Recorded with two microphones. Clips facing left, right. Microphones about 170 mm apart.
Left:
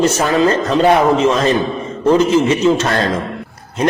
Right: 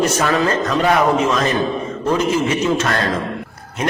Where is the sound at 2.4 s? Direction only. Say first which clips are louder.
Left 4 dB; 25° left (ahead or behind).